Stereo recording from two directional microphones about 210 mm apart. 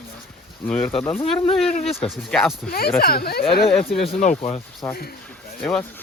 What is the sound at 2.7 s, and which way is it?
Speech, 45° left (ahead or behind).